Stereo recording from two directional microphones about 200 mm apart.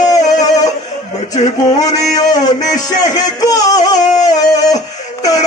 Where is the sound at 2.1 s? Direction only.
20° left (ahead or behind).